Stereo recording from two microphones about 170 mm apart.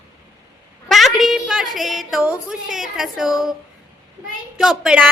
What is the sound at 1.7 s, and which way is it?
Female singing, centre (ahead or behind).